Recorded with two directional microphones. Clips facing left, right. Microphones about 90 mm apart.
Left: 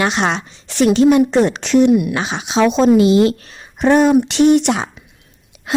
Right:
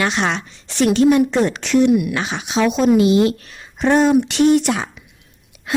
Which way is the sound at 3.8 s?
15° left (ahead or behind).